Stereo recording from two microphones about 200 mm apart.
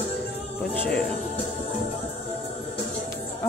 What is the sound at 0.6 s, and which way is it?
Music, 5° left (ahead or behind).